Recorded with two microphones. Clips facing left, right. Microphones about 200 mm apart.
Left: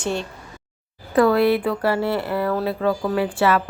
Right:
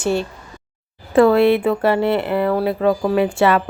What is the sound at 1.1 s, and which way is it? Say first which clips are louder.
A woman's voice: right 4 dB; 25° right (ahead or behind).